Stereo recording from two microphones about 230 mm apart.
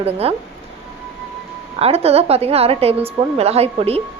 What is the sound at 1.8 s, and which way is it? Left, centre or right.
Speech, right.